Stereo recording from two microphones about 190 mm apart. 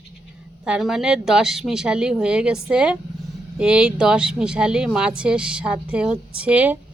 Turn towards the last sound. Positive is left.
turn(degrees=-10)  # may be behind; listen again after turning